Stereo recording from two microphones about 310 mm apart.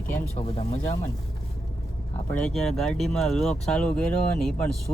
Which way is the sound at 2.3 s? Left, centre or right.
Centre.